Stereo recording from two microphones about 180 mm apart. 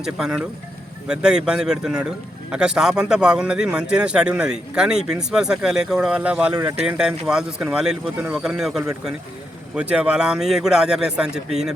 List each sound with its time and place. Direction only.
0.0 s a man's voice: 5° right (ahead or behind)
6.5 s speech: 20° right (ahead or behind)
6.8 s a man's voice: 5° right (ahead or behind)